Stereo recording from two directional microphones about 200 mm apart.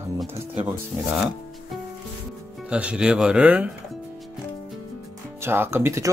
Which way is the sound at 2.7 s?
5° right (ahead or behind).